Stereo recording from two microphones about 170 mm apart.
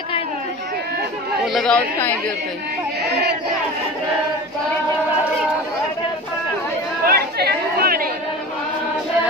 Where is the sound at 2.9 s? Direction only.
70° right (ahead or behind).